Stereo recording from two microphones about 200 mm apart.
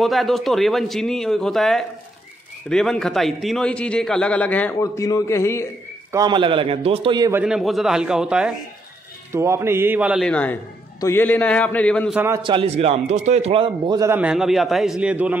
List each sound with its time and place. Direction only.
0.0 s a man's voice: centre (ahead or behind)
6.1 s a man's voice: 20° right (ahead or behind)
7.4 s a man's voice: centre (ahead or behind)
10.3 s a man's voice: 5° left (ahead or behind)
12.4 s a man's voice: 30° right (ahead or behind); by 15.3 s 5° right (ahead or behind)